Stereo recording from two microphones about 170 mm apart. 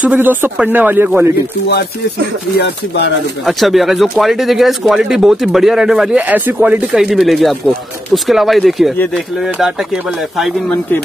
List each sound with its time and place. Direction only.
0.0 s speech: 10° right (ahead or behind)
2.5 s speech: 90° left
3.4 s speech: centre (ahead or behind)
10.3 s speech: centre (ahead or behind)